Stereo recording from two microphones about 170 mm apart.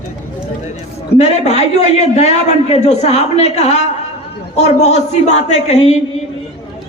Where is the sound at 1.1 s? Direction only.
40° left (ahead or behind).